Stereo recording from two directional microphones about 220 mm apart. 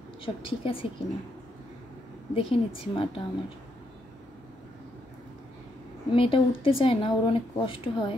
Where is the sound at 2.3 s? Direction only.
25° left (ahead or behind).